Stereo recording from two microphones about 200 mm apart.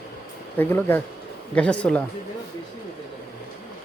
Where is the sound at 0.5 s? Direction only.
10° left (ahead or behind).